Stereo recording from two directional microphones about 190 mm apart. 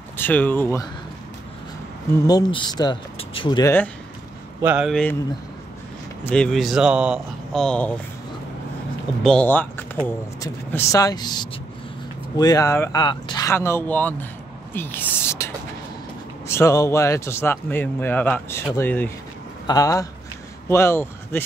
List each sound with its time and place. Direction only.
0.2 s speech: 10° left (ahead or behind)
2.2 s speech: 20° left (ahead or behind)
4.6 s speech: 10° right (ahead or behind)
6.2 s speech: 5° left (ahead or behind)
9.2 s speech: 5° left (ahead or behind)